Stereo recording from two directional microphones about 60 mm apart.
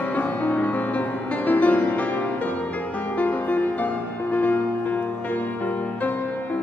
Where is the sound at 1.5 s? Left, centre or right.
Left.